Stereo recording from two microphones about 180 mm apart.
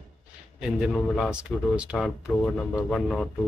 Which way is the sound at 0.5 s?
5° right (ahead or behind).